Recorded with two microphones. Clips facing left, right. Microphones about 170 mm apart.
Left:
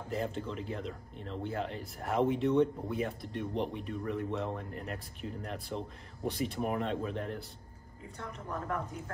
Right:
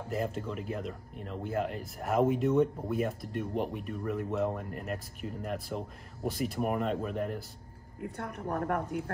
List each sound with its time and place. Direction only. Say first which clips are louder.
0.1 s speech: right 2 dB; 5° right (ahead or behind)
8.0 s a woman's voice: right 7 dB; 60° right (ahead or behind)